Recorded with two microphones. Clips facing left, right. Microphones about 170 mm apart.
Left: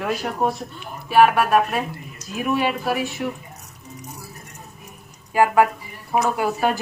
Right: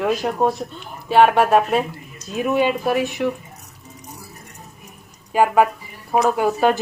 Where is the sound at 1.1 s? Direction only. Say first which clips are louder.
Right 2 dB; 25° right (ahead or behind).